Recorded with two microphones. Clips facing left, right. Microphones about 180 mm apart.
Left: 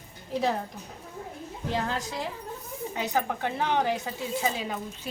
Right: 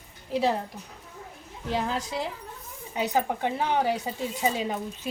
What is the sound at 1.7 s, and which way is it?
A woman's voice, 5° right (ahead or behind).